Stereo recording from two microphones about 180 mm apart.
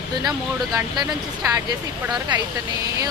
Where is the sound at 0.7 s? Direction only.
20° right (ahead or behind).